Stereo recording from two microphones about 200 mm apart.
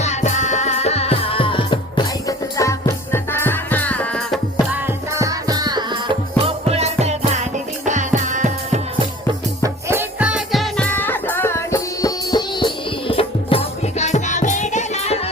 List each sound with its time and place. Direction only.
0.0 s music: 35° left (ahead or behind); by 4.4 s 5° left (ahead or behind)
4.7 s music: 15° right (ahead or behind); by 9.0 s 35° right (ahead or behind)
9.6 s music: 10° right (ahead or behind); by 15.3 s 30° left (ahead or behind)